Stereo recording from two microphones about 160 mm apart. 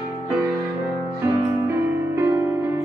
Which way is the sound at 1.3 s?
15° right (ahead or behind).